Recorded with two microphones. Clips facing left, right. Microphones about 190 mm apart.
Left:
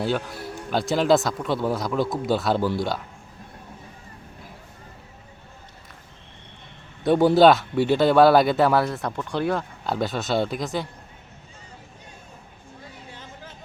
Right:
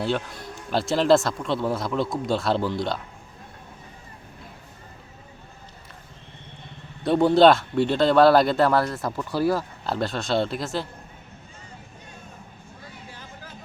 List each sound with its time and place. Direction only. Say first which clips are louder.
0.0 s speech: left 1 dB; centre (ahead or behind)
7.0 s speech: left 1 dB; centre (ahead or behind)
13.1 s a sound: left 1 dB; 25° left (ahead or behind)